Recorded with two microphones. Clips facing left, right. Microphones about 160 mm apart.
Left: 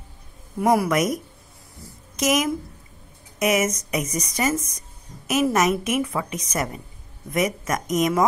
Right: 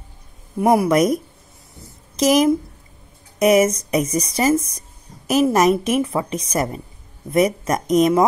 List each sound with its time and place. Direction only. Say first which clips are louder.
0.6 s speech: right 4 dB; 25° right (ahead or behind)
2.1 s a woman's voice: right 7 dB; 35° right (ahead or behind)